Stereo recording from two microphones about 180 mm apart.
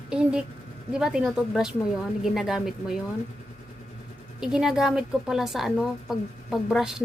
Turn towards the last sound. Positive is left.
turn(degrees=-5)  # may be behind; listen again after turning